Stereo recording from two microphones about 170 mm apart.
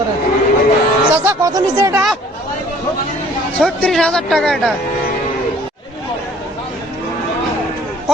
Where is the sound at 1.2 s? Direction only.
20° right (ahead or behind).